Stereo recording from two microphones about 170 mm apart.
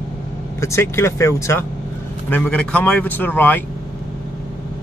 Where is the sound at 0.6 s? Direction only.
15° left (ahead or behind).